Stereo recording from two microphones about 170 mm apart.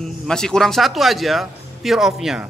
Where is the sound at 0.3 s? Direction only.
5° left (ahead or behind).